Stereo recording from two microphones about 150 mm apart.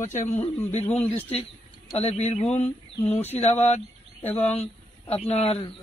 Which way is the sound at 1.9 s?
45° left (ahead or behind).